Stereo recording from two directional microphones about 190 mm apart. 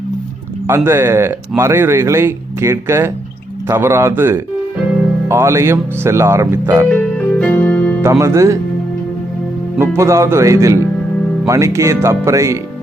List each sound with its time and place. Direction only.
0.7 s speech: 10° right (ahead or behind)
6.9 s music: 10° left (ahead or behind)
8.2 s speech: 15° right (ahead or behind)
9.7 s speech: 15° right (ahead or behind)